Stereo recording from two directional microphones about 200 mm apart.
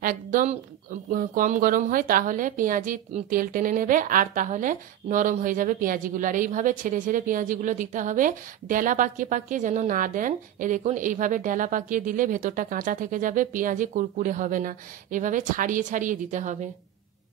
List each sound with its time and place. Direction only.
0.0 s a woman's voice: 40° right (ahead or behind)